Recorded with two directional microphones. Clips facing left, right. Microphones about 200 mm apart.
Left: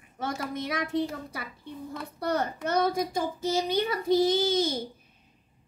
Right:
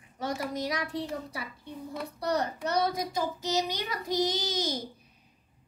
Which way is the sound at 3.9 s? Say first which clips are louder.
Left 5 dB; 25° left (ahead or behind).